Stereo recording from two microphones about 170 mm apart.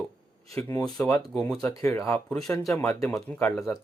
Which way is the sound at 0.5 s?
15° left (ahead or behind).